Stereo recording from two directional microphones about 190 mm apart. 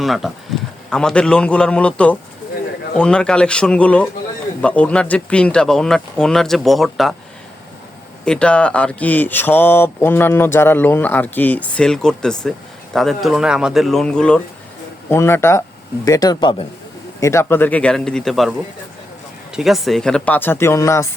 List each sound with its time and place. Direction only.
0.0 s speech: centre (ahead or behind)
8.2 s speech: 5° left (ahead or behind)
19.5 s speech: centre (ahead or behind); by 21.1 s 15° left (ahead or behind)